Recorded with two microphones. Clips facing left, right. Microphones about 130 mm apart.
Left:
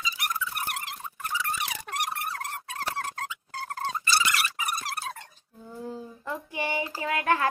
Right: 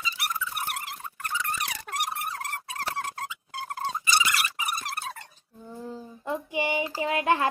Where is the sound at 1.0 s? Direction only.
10° left (ahead or behind).